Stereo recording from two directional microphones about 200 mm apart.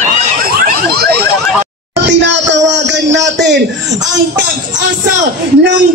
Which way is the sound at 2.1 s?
60° right (ahead or behind).